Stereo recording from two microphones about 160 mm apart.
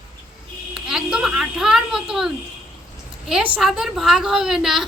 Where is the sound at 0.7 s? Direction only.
5° right (ahead or behind).